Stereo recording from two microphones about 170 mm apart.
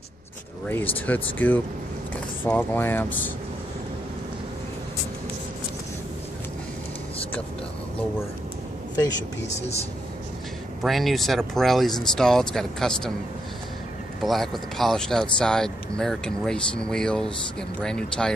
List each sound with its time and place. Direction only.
0.7 s speech: 10° left (ahead or behind)
9.5 s speech: 40° left (ahead or behind)
10.8 s speech: centre (ahead or behind)
14.2 s speech: centre (ahead or behind)